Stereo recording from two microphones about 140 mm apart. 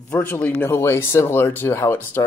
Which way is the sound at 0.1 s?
15° left (ahead or behind).